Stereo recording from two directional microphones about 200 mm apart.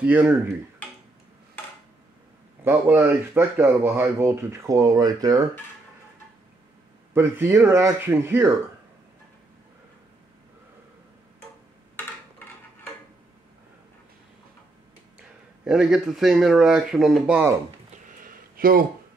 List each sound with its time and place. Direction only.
0.0 s speech: 5° right (ahead or behind)
2.6 s speech: 10° right (ahead or behind)
7.2 s speech: 15° right (ahead or behind)
15.1 s speech: 5° right (ahead or behind)
17.9 s a sound: 45° right (ahead or behind)